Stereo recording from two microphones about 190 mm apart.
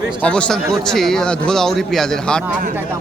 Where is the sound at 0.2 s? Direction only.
5° left (ahead or behind).